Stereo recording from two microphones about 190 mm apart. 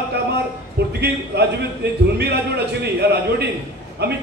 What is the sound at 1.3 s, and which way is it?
A man's voice, 60° right (ahead or behind).